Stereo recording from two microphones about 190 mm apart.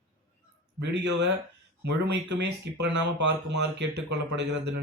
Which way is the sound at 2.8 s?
65° right (ahead or behind).